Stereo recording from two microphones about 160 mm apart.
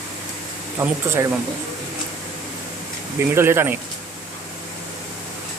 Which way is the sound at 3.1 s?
15° right (ahead or behind).